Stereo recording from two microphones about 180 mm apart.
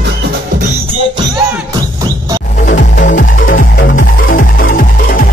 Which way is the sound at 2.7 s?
45° left (ahead or behind).